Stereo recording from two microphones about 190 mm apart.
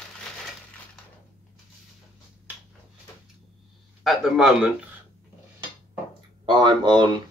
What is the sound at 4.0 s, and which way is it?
Speech, centre (ahead or behind).